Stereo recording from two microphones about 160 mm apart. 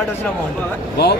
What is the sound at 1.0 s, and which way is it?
Speech, 90° left.